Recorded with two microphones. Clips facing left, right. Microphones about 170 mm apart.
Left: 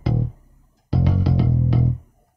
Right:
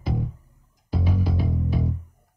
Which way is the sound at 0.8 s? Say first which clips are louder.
Left 5 dB; 75° left (ahead or behind).